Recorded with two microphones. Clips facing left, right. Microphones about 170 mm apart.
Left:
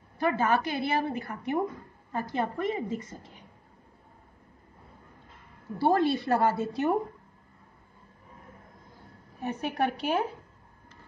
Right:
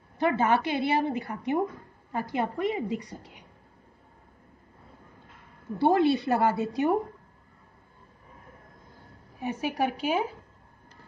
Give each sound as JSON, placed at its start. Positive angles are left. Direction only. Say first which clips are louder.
{"t": 0.2, "sound": "a woman's voice", "louder": "right 2 dB", "side_deg": -20}
{"t": 5.8, "sound": "a woman's voice", "louder": "right 2 dB", "side_deg": -20}
{"t": 9.4, "sound": "a woman's voice", "louder": "right 1 dB", "side_deg": -5}